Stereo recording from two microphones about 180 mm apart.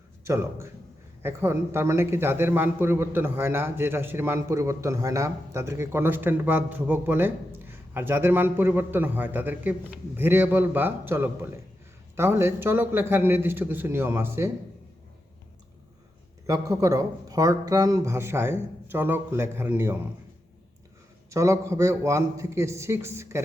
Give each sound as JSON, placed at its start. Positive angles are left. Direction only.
{"t": 1.2, "sound": "a man's voice", "side_deg": -15}
{"t": 16.5, "sound": "a man's voice", "side_deg": -20}
{"t": 21.2, "sound": "a man's voice", "side_deg": -15}